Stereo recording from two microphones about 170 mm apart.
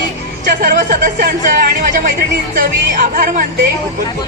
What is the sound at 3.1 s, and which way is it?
Speech, 55° right (ahead or behind).